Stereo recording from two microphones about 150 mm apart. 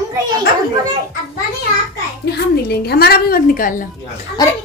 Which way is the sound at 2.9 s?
90° left.